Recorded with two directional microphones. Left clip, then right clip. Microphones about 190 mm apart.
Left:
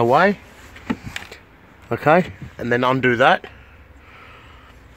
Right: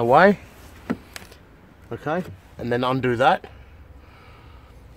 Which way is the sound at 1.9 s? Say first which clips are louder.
Left 11 dB; 35° left (ahead or behind).